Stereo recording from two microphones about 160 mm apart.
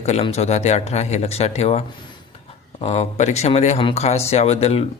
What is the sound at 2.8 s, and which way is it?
Speech, 40° left (ahead or behind).